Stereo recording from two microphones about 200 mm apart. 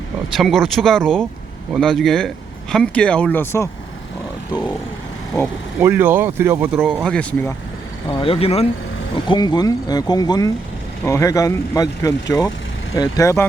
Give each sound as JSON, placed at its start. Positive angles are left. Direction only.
{"t": 0.3, "sound": "speech", "side_deg": 0}
{"t": 5.8, "sound": "speech", "side_deg": -10}
{"t": 6.8, "sound": "speech", "side_deg": 0}
{"t": 8.2, "sound": "speech", "side_deg": 30}